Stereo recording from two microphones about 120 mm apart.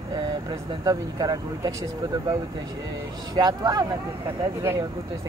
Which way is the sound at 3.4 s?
35° right (ahead or behind).